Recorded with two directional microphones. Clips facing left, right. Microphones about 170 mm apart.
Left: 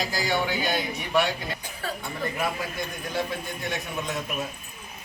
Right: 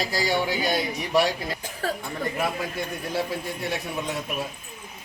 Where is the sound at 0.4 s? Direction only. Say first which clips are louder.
Right 2 dB; 35° right (ahead or behind).